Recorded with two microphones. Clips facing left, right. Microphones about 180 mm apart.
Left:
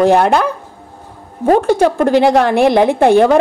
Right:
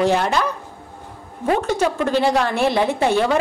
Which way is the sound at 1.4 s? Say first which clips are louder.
Left 8 dB; 40° left (ahead or behind).